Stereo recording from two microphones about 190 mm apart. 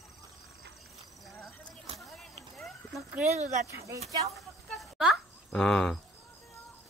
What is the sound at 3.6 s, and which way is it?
Speech, 15° right (ahead or behind).